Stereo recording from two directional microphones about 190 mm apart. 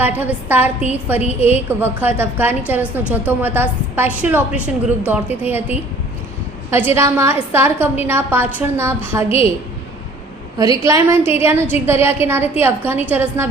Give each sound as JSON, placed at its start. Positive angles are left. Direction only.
{"t": 0.0, "sound": "a woman's voice", "side_deg": -10}
{"t": 10.6, "sound": "a woman's voice", "side_deg": -15}